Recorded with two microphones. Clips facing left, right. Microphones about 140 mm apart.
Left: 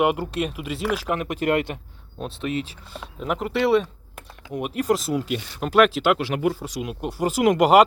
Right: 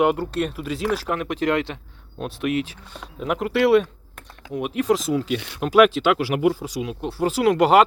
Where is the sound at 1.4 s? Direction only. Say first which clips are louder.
Even; 50° left (ahead or behind).